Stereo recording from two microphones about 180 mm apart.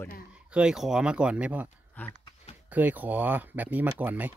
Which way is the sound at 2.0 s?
10° left (ahead or behind).